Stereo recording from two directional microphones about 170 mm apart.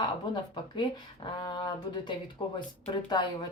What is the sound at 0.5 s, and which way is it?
Speech, 25° left (ahead or behind).